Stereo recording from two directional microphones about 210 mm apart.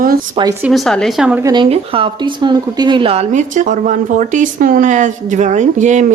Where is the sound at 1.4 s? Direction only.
20° right (ahead or behind).